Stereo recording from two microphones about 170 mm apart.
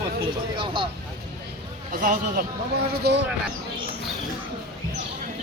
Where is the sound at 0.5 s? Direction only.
30° right (ahead or behind).